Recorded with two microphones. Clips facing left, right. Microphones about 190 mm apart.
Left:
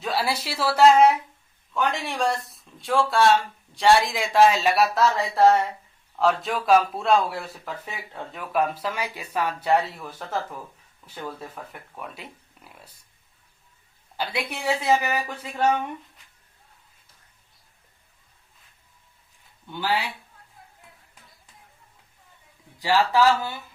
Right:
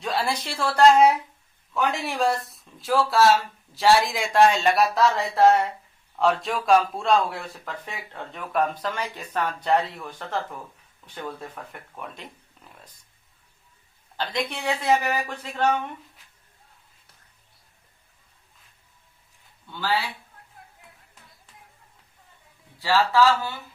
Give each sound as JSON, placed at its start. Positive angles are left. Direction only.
{"t": 0.0, "sound": "speech", "side_deg": 5}
{"t": 14.2, "sound": "speech", "side_deg": 10}
{"t": 19.7, "sound": "speech", "side_deg": 15}
{"t": 22.8, "sound": "speech", "side_deg": 15}